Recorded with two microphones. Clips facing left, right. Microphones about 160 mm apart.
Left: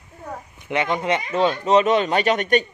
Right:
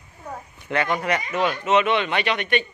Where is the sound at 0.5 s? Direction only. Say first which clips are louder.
Left 1 dB; 20° left (ahead or behind).